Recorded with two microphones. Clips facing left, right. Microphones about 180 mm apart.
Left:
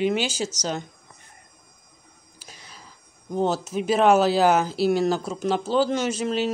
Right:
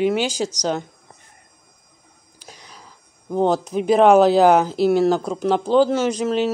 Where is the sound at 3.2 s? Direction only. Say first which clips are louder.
Right 5 dB; 55° right (ahead or behind).